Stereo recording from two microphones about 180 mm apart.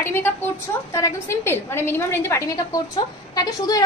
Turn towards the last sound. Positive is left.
turn(degrees=20)  # may be behind; listen again after turning